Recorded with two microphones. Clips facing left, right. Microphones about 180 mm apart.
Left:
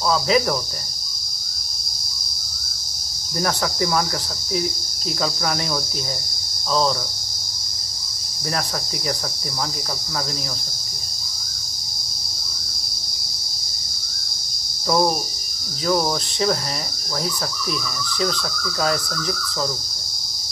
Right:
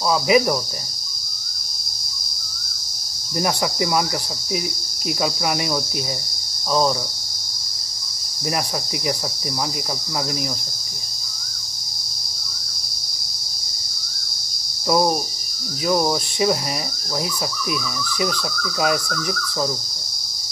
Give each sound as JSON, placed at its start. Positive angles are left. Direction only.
{"t": 0.1, "sound": "cricket", "side_deg": -15}
{"t": 3.3, "sound": "cricket", "side_deg": -15}
{"t": 5.2, "sound": "cricket", "side_deg": -15}
{"t": 14.9, "sound": "cricket", "side_deg": -10}
{"t": 18.2, "sound": "cricket", "side_deg": -15}